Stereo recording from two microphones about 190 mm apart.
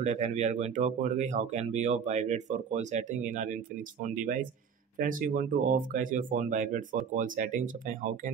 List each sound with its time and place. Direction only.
0.0 s speech: 35° right (ahead or behind)